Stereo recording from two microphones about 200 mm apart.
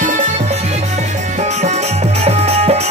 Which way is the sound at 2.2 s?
30° right (ahead or behind).